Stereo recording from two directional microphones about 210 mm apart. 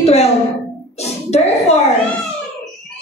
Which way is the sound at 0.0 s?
30° left (ahead or behind).